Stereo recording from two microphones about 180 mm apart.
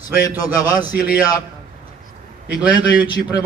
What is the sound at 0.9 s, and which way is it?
Speech, 10° right (ahead or behind).